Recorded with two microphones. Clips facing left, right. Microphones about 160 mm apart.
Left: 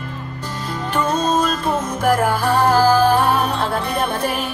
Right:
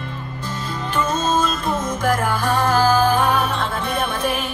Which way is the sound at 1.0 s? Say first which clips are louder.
Left 2 dB; 35° left (ahead or behind).